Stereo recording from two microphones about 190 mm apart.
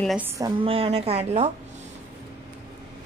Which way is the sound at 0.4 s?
25° right (ahead or behind).